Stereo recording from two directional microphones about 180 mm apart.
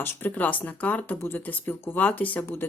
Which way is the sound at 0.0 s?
10° left (ahead or behind).